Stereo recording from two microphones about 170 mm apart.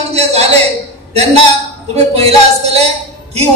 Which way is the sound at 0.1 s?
40° right (ahead or behind).